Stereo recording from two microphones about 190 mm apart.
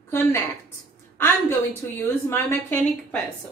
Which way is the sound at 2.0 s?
10° left (ahead or behind).